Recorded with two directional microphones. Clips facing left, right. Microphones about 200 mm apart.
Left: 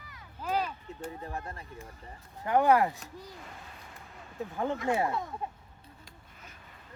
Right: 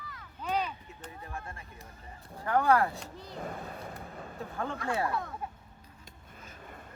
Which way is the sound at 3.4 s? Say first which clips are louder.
Right 9 dB; 50° right (ahead or behind).